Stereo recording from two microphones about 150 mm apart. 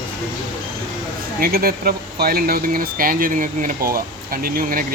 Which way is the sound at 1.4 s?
85° right.